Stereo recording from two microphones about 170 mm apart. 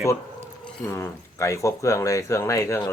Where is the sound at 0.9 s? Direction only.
15° left (ahead or behind).